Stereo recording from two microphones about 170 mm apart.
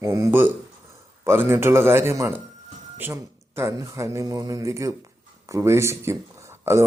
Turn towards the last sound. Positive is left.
turn(degrees=-15)  # may be behind; listen again after turning